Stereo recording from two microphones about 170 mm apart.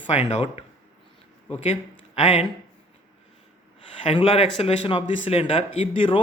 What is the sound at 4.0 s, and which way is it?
Speech, 35° left (ahead or behind).